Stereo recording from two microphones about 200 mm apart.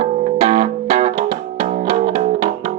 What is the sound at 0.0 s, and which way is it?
Music, 30° right (ahead or behind).